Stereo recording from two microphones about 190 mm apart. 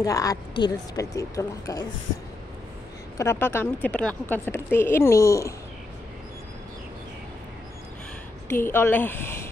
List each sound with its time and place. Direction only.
0.0 s a woman's voice: 20° left (ahead or behind)
3.2 s a woman's voice: 15° left (ahead or behind)
8.5 s a woman's voice: 10° left (ahead or behind)